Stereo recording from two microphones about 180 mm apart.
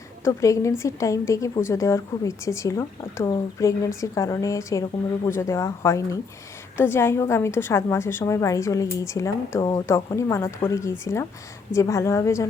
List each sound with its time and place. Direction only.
0.3 s speech: 15° left (ahead or behind)